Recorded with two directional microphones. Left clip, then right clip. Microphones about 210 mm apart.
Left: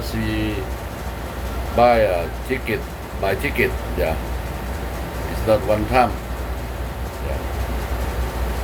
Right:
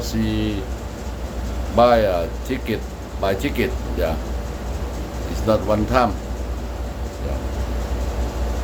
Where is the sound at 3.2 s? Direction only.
15° right (ahead or behind).